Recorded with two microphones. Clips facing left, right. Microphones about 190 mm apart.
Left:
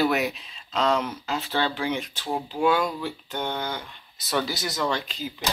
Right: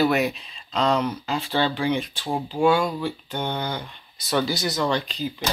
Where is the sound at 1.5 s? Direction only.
15° right (ahead or behind).